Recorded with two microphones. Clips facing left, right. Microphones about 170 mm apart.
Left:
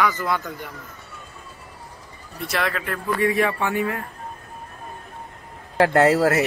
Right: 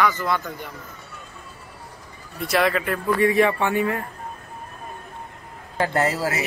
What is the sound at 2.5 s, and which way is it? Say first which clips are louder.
Speech: right 5 dB; 5° right (ahead or behind).